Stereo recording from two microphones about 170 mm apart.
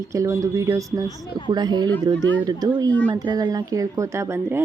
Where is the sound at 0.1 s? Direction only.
20° right (ahead or behind).